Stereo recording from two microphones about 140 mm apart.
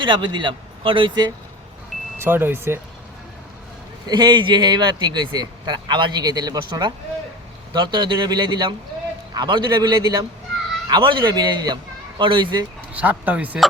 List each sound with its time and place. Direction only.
0.0 s speech: 35° right (ahead or behind)
2.1 s speech: 15° right (ahead or behind)
4.0 s a man's voice: 30° right (ahead or behind)
12.9 s speech: 10° right (ahead or behind)